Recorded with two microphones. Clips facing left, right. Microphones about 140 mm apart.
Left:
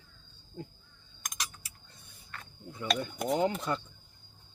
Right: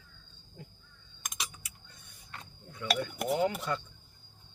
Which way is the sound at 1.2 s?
5° right (ahead or behind).